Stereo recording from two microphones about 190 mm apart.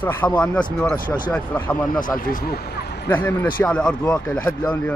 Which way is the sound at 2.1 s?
50° left (ahead or behind).